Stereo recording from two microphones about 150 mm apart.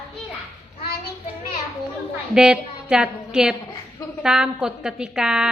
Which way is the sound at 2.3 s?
5° right (ahead or behind).